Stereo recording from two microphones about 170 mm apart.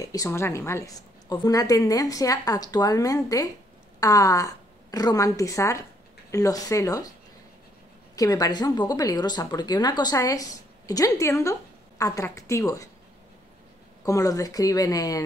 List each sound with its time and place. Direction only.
0.0 s a woman's voice: 20° left (ahead or behind)
8.2 s a woman's voice: 20° left (ahead or behind)
14.0 s a woman's voice: 20° left (ahead or behind)